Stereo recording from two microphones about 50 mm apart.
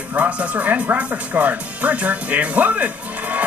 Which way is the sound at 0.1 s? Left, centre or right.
Right.